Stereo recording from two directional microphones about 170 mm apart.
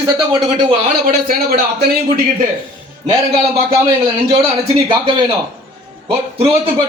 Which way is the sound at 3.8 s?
25° right (ahead or behind).